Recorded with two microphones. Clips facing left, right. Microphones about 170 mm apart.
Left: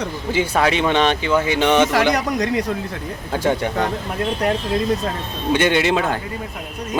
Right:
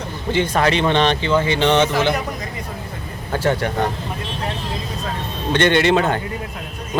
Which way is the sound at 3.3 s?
10° left (ahead or behind).